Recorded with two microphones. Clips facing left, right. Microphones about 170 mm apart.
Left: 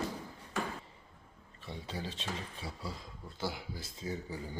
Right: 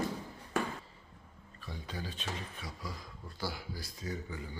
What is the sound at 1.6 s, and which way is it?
Speech, 25° left (ahead or behind).